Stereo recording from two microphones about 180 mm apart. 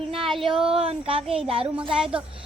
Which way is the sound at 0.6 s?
35° right (ahead or behind).